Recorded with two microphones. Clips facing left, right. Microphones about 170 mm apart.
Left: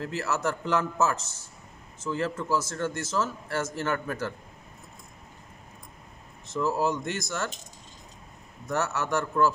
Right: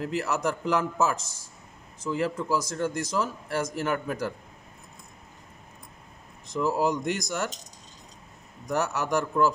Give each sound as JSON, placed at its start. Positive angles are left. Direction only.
{"t": 0.0, "sound": "speech", "side_deg": -15}
{"t": 6.4, "sound": "speech", "side_deg": -15}
{"t": 8.6, "sound": "speech", "side_deg": -15}